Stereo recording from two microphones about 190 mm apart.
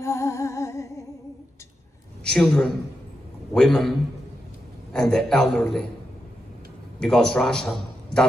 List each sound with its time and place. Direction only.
0.0 s music: 15° left (ahead or behind)
2.2 s a man's voice: 5° left (ahead or behind)
4.9 s a man's voice: 5° left (ahead or behind)
7.0 s a man's voice: 5° left (ahead or behind)